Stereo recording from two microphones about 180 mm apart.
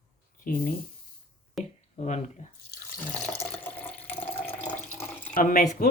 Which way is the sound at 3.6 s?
10° left (ahead or behind).